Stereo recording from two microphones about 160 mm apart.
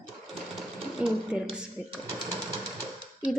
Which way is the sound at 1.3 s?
5° right (ahead or behind).